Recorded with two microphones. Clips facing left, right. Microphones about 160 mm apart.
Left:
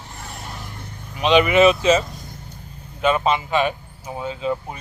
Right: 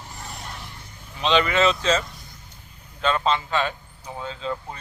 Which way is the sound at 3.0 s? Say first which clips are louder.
Left 4 dB; 15° left (ahead or behind).